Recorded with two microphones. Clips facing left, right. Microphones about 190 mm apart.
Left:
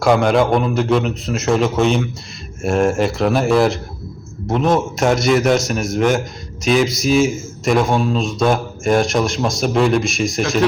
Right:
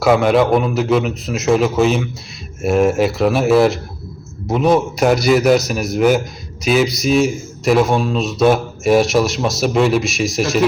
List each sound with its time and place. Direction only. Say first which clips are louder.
0.0 s a man's voice: right 1 dB; 5° right (ahead or behind)